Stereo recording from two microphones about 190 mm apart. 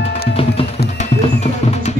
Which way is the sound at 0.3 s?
30° left (ahead or behind).